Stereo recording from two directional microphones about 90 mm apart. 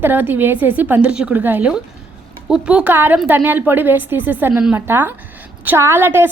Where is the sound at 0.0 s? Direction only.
20° right (ahead or behind).